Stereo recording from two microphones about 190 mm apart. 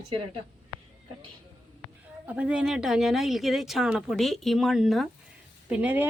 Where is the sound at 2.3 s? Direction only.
5° right (ahead or behind).